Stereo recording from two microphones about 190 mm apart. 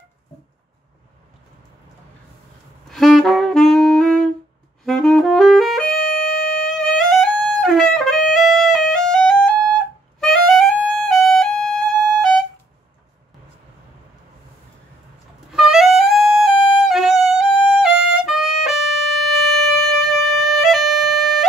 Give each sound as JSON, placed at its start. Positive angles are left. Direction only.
{"t": 2.9, "sound": "saxophone", "side_deg": 0}
{"t": 5.9, "sound": "music", "side_deg": 50}
{"t": 7.1, "sound": "music", "side_deg": 0}
{"t": 15.5, "sound": "music", "side_deg": -5}